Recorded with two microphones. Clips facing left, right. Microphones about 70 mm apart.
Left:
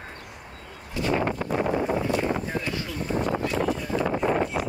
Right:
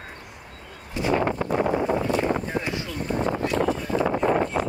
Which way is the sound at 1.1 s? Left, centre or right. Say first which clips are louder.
Right 3 dB; right.